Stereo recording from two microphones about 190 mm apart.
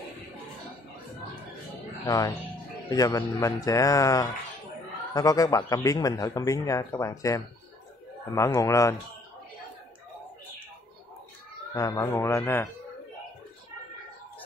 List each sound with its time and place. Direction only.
2.0 s a man's voice: 20° left (ahead or behind)
11.7 s a man's voice: 15° left (ahead or behind)